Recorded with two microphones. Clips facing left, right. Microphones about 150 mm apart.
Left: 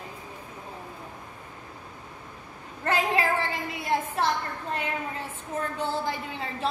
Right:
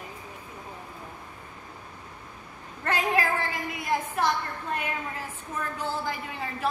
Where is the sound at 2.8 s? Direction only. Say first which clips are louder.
Left 1 dB; 30° left (ahead or behind).